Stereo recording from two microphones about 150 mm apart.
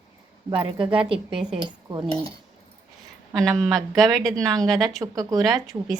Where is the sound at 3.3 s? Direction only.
5° left (ahead or behind).